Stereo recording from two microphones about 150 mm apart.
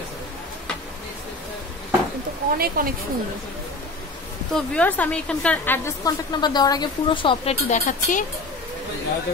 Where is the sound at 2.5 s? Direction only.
80° right.